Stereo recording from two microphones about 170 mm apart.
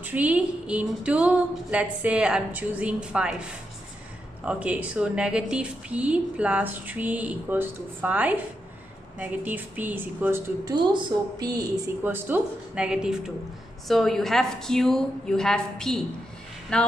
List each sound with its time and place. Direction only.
0.0 s a woman's voice: 10° right (ahead or behind)
10.6 s a woman's voice: 25° right (ahead or behind)
12.0 s a woman's voice: 10° right (ahead or behind)